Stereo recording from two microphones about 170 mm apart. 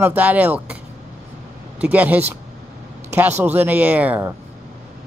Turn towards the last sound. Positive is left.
turn(degrees=-10)  # may be behind; listen again after turning